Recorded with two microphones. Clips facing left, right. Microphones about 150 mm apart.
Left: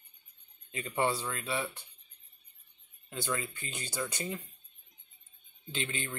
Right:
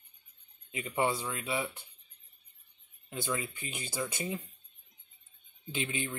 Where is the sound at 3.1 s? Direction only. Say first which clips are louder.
Even; 15° right (ahead or behind).